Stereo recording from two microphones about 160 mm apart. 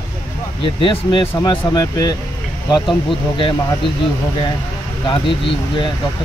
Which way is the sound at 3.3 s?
30° left (ahead or behind).